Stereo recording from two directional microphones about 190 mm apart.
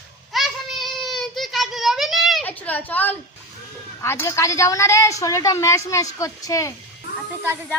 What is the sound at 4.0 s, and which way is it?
A woman's voice, 15° left (ahead or behind).